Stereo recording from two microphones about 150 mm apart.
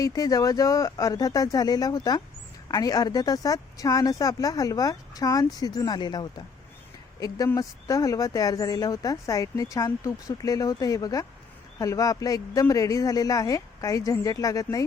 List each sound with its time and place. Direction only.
0.0 s speech: 25° left (ahead or behind)